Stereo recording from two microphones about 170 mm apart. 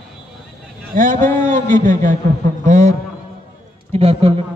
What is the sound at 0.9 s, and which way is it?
A man's voice, 50° right (ahead or behind).